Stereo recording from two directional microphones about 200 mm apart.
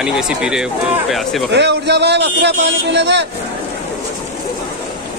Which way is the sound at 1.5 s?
60° right (ahead or behind).